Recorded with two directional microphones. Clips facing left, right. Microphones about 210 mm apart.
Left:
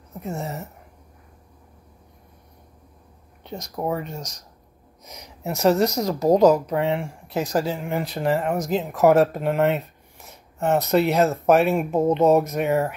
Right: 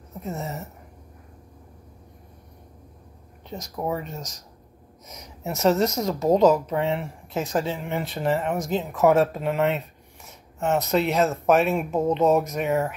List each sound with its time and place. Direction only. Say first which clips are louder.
0.1 s speech: left 2 dB; centre (ahead or behind)
3.4 s speech: left 2 dB; centre (ahead or behind)